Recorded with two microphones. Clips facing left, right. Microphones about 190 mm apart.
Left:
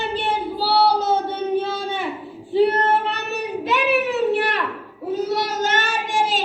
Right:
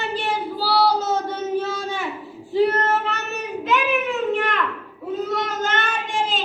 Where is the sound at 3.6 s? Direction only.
35° left (ahead or behind).